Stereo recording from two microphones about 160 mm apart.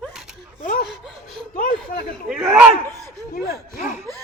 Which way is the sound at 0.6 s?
60° left (ahead or behind).